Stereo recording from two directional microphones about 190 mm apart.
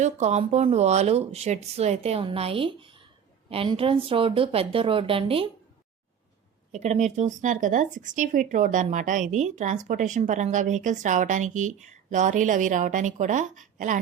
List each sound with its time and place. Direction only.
0.0 s a woman's voice: 35° right (ahead or behind)
6.7 s speech: 35° right (ahead or behind)